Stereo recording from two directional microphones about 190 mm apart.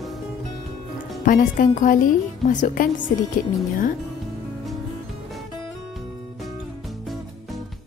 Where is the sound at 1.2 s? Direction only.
45° left (ahead or behind).